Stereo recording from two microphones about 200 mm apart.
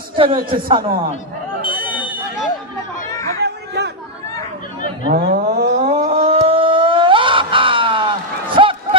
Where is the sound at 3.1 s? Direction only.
15° left (ahead or behind).